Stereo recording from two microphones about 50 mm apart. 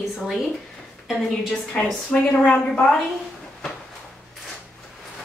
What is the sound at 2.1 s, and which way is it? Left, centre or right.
Speech, left.